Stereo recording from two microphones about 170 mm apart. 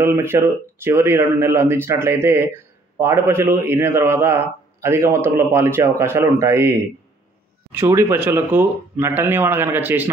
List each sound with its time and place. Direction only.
0.0 s speech: 15° right (ahead or behind)
7.7 s speech: 15° right (ahead or behind)